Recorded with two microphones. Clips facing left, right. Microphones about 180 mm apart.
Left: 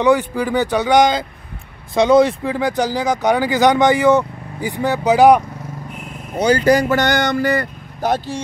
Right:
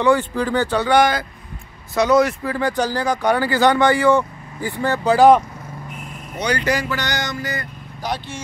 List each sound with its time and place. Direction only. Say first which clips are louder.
0.0 s speech: left 2 dB; 15° left (ahead or behind)
2.5 s speech: left 2 dB; 15° left (ahead or behind)
6.5 s speech: left 8 dB; 40° left (ahead or behind); by 8.2 s 55° left (ahead or behind)